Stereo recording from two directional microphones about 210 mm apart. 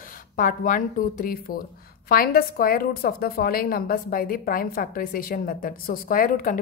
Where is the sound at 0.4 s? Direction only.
40° left (ahead or behind).